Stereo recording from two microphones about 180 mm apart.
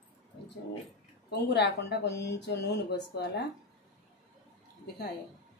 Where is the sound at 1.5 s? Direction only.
70° left (ahead or behind).